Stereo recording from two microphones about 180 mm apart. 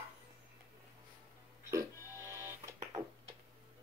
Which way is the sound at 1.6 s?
15° right (ahead or behind).